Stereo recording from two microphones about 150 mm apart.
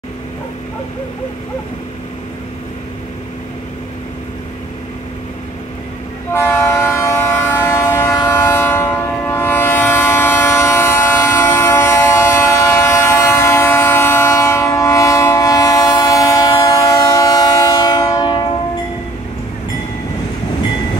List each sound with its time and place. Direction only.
6.3 s train: 15° left (ahead or behind)